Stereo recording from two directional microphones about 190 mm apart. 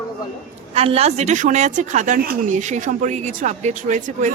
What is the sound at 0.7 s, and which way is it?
A woman's voice, 30° right (ahead or behind).